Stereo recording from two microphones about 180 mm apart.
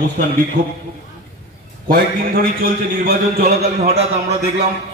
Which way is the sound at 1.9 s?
55° right (ahead or behind).